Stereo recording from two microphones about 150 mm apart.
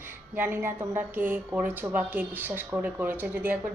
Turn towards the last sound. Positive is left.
turn(degrees=-10)  # may be behind; listen again after turning